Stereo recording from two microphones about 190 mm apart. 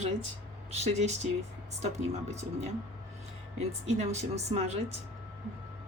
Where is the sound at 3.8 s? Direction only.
35° right (ahead or behind).